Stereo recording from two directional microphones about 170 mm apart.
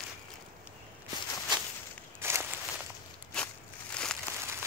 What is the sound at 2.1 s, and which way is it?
Walk, 15° right (ahead or behind).